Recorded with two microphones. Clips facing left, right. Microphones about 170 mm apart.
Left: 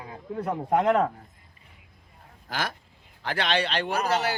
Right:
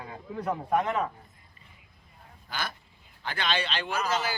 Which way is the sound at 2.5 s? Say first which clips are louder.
Left 4 dB; 85° left.